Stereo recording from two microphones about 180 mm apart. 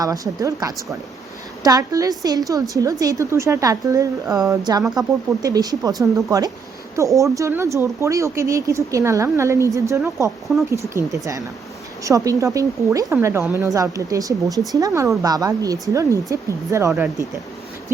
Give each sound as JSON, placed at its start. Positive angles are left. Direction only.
{"t": 0.0, "sound": "a woman's voice", "side_deg": -20}